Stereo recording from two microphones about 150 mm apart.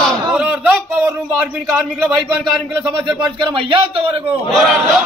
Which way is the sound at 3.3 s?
35° right (ahead or behind).